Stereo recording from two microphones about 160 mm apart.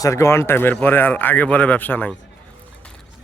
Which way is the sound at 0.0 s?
20° left (ahead or behind).